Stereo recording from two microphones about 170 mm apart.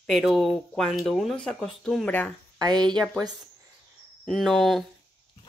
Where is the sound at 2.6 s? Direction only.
25° right (ahead or behind).